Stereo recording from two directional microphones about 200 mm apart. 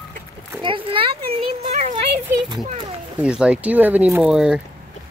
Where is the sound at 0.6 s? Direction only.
25° right (ahead or behind).